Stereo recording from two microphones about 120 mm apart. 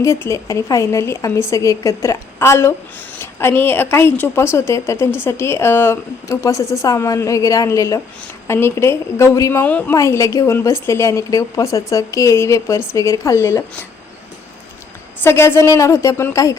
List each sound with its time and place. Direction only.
0.0 s a woman's voice: 25° left (ahead or behind)
9.9 s a woman's voice: 25° left (ahead or behind)
15.2 s a woman's voice: 20° left (ahead or behind)